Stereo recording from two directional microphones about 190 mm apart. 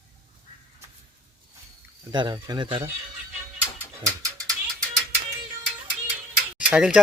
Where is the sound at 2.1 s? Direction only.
25° right (ahead or behind).